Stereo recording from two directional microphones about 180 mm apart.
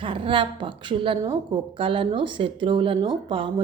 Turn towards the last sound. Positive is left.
turn(degrees=-25)  # may be behind; listen again after turning